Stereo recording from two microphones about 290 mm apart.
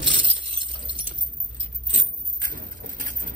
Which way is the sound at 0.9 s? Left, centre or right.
Centre.